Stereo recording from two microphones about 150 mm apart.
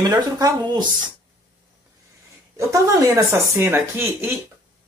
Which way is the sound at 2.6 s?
20° right (ahead or behind).